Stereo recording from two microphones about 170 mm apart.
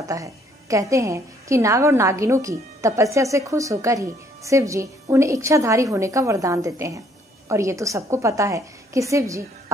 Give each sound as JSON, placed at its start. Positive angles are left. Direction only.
{"t": 0.0, "sound": "a woman's voice", "side_deg": -20}